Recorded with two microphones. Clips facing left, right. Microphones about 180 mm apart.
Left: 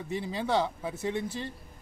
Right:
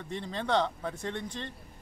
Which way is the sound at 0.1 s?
5° left (ahead or behind).